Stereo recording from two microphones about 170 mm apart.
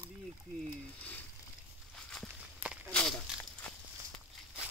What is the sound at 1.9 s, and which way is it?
Walk, centre (ahead or behind).